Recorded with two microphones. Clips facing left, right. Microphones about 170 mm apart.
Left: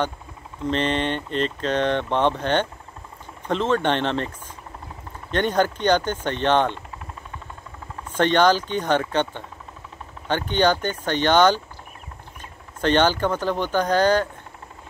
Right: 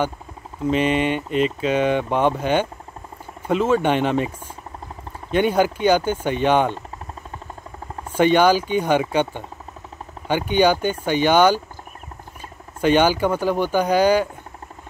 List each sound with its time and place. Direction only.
0.7 s speech: 10° right (ahead or behind)
5.3 s speech: 10° right (ahead or behind)
8.1 s speech: 10° right (ahead or behind)
12.8 s speech: 10° right (ahead or behind)